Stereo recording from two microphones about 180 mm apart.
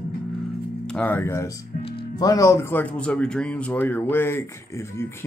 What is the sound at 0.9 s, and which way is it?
Speech, 10° left (ahead or behind).